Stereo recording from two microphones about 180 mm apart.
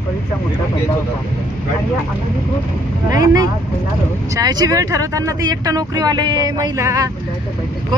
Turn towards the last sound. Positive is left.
turn(degrees=-15)  # may be behind; listen again after turning